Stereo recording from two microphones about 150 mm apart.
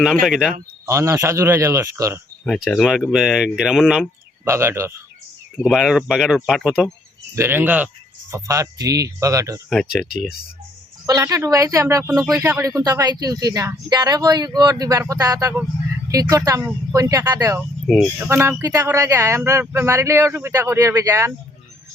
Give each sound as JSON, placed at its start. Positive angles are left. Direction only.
{"t": 0.3, "sound": "speech", "side_deg": -5}
{"t": 0.9, "sound": "speech", "side_deg": -20}
{"t": 2.6, "sound": "speech", "side_deg": 0}
{"t": 4.4, "sound": "speech", "side_deg": -15}
{"t": 5.6, "sound": "speech", "side_deg": 0}
{"t": 7.3, "sound": "speech", "side_deg": -15}
{"t": 9.6, "sound": "speech", "side_deg": 0}
{"t": 11.0, "sound": "speech", "side_deg": -20}
{"t": 17.8, "sound": "speech", "side_deg": 0}
{"t": 18.3, "sound": "speech", "side_deg": -15}